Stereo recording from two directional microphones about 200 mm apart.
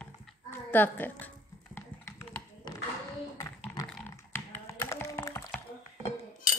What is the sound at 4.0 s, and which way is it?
Computer keyboard, 10° left (ahead or behind).